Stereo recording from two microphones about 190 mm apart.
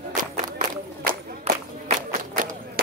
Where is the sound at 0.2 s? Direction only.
45° right (ahead or behind).